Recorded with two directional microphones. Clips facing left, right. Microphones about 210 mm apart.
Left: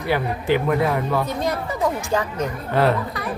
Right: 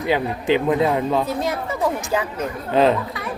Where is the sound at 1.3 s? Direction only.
5° right (ahead or behind).